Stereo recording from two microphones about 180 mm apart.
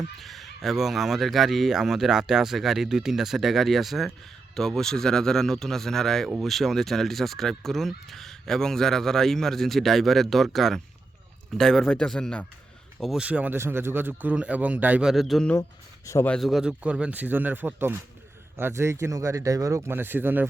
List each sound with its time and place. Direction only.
0.2 s speech: centre (ahead or behind)
16.0 s speech: 15° left (ahead or behind)
16.3 s speech: centre (ahead or behind)